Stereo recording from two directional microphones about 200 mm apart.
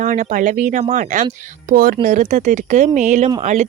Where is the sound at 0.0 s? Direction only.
40° right (ahead or behind).